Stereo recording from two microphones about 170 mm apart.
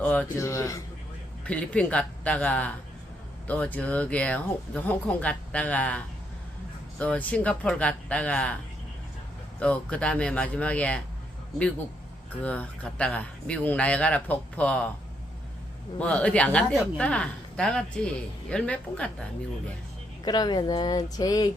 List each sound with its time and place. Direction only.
0.0 s a sound: 5° left (ahead or behind)
0.3 s speech: 15° left (ahead or behind)
7.0 s speech: 5° left (ahead or behind)
9.6 s speech: 5° left (ahead or behind)
12.4 s speech: 10° left (ahead or behind)
16.0 s a woman's voice: 10° left (ahead or behind)
20.2 s speech: 25° left (ahead or behind)